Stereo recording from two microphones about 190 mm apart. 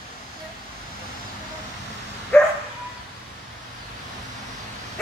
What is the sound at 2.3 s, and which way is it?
Dog, 5° left (ahead or behind).